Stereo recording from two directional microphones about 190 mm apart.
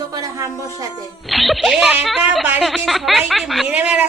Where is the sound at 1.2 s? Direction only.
Centre (ahead or behind).